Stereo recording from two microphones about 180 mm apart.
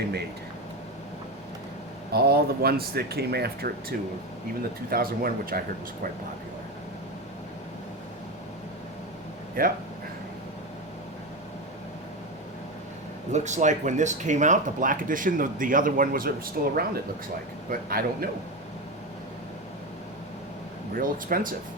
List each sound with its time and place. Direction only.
2.1 s speech: 60° right (ahead or behind)
9.6 s speech: 50° right (ahead or behind)
13.3 s speech: 40° right (ahead or behind)
20.9 s speech: 50° right (ahead or behind)